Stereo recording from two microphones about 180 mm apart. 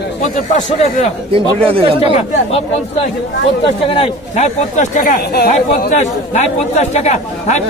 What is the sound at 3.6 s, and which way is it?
Speech, 30° left (ahead or behind).